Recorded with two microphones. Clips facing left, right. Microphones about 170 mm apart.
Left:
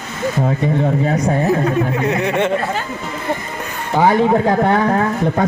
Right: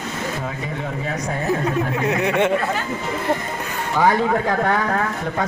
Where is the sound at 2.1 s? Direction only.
10° right (ahead or behind).